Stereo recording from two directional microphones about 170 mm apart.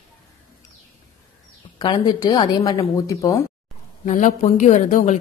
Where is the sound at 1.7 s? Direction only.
25° left (ahead or behind).